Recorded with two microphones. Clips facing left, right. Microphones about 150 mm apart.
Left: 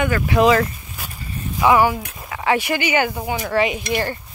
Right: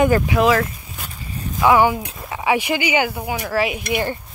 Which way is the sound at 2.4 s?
15° right (ahead or behind).